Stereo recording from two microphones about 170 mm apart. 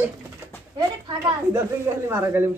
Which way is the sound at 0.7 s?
20° right (ahead or behind).